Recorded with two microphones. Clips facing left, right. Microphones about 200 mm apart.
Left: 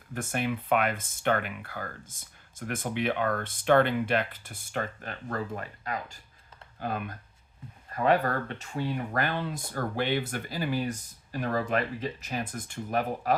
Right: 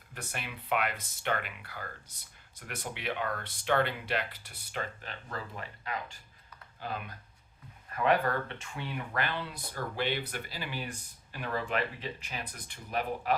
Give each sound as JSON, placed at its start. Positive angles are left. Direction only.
{"t": 0.1, "sound": "speech", "side_deg": 50}
{"t": 7.9, "sound": "speech", "side_deg": 35}